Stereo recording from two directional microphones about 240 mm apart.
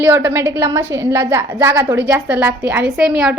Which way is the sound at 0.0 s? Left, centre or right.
Centre.